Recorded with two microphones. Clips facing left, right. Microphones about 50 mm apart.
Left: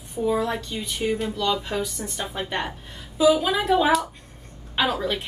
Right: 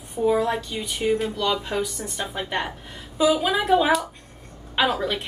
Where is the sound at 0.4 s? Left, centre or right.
Centre.